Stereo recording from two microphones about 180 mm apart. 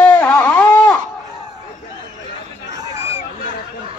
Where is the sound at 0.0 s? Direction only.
5° left (ahead or behind).